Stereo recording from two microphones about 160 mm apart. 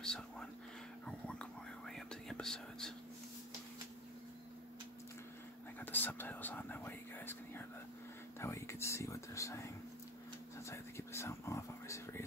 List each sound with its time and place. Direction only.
0.0 s whispering: 5° left (ahead or behind)
5.8 s whispering: 10° left (ahead or behind)
8.4 s a sound: 15° left (ahead or behind)
10.6 s whispering: 15° left (ahead or behind)